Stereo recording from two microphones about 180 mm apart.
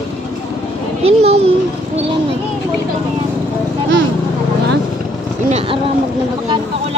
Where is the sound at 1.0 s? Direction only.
35° right (ahead or behind).